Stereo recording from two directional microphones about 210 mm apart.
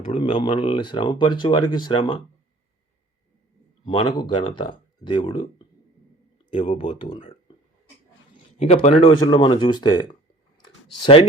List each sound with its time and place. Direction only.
0.1 s speech: 25° left (ahead or behind)
4.2 s speech: 25° left (ahead or behind)
6.5 s speech: 25° left (ahead or behind)
8.5 s speech: 30° left (ahead or behind)
10.6 s clicking: 25° left (ahead or behind)